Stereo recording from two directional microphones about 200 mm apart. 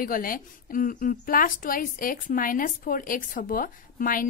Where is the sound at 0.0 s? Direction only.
45° left (ahead or behind).